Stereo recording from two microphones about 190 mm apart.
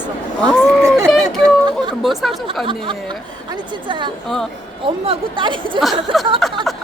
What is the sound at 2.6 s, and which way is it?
Speech, 25° right (ahead or behind).